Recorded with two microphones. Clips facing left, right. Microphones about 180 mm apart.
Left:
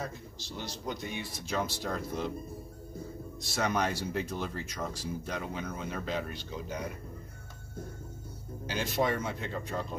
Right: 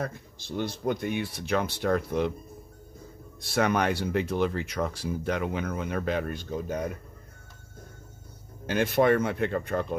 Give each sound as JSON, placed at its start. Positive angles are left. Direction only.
{"t": 0.0, "sound": "speech", "side_deg": -55}
{"t": 3.4, "sound": "speech", "side_deg": -60}
{"t": 8.6, "sound": "speech", "side_deg": -60}